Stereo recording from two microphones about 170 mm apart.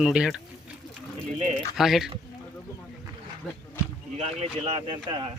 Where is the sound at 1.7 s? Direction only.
Centre (ahead or behind).